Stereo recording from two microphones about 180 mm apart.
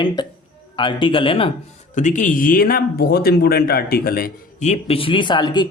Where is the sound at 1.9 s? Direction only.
45° left (ahead or behind).